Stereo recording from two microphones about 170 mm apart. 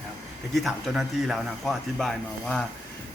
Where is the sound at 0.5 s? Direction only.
Centre (ahead or behind).